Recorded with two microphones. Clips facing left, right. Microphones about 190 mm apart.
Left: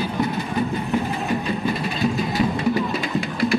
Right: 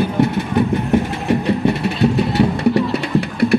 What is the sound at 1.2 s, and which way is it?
Vehicle, 70° right (ahead or behind).